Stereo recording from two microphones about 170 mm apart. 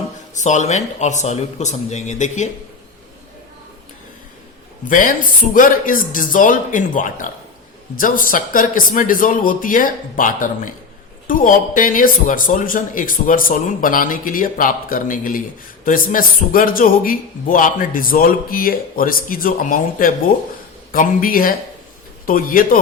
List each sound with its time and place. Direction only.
0.3 s a man's voice: 45° left (ahead or behind)
4.9 s a man's voice: 50° left (ahead or behind)